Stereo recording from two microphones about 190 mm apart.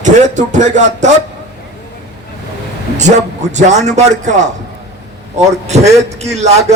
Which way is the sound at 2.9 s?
40° right (ahead or behind).